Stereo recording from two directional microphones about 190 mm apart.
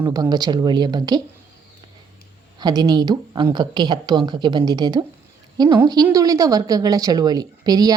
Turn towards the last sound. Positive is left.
turn(degrees=-20)  # may be behind; listen again after turning